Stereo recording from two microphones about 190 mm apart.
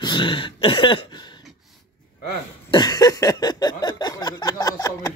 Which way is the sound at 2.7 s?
20° left (ahead or behind).